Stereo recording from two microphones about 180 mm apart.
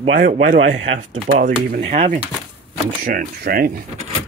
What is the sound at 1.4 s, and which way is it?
Speech, 50° right (ahead or behind).